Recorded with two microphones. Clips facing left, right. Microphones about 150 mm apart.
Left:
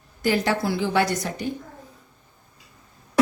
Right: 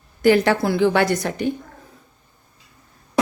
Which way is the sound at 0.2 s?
65° right (ahead or behind).